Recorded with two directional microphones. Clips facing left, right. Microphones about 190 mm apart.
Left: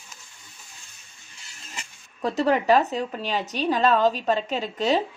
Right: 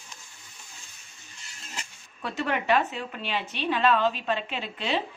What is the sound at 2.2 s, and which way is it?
A woman's voice, 35° left (ahead or behind).